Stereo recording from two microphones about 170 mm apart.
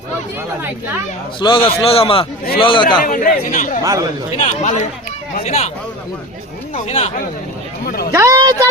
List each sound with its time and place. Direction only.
1.4 s a man's voice: 30° left (ahead or behind)
3.0 s speech: 55° left (ahead or behind)
3.8 s speech: 20° right (ahead or behind)
4.4 s a man's voice: 45° left (ahead or behind)
6.8 s a man's voice: 40° left (ahead or behind)
7.9 s speech: 65° left (ahead or behind)
8.1 s speech: 15° right (ahead or behind)